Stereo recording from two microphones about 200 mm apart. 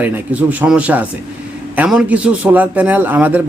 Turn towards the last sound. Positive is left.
turn(degrees=-10)  # may be behind; listen again after turning